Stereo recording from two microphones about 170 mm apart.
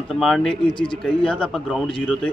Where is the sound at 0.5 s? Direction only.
30° left (ahead or behind).